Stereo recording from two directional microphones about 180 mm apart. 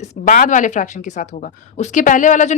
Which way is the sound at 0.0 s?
45° left (ahead or behind).